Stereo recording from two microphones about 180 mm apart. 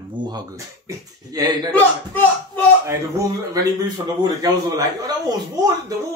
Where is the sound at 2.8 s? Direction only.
20° right (ahead or behind).